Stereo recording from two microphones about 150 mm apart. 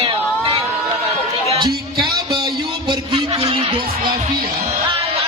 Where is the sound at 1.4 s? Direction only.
35° right (ahead or behind).